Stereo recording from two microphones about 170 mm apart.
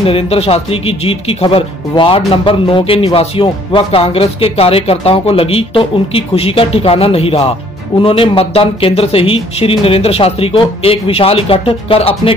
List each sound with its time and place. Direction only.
0.0 s speech: 35° left (ahead or behind)